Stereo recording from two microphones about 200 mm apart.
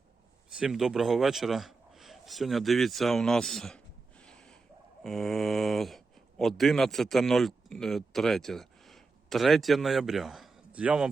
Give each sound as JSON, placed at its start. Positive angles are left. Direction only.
{"t": 0.5, "sound": "a man's voice", "side_deg": -5}
{"t": 4.2, "sound": "a sound", "side_deg": 5}
{"t": 5.0, "sound": "speech", "side_deg": 0}